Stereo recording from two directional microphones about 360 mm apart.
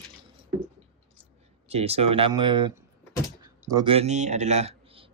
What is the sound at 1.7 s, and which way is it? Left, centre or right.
Speech, centre.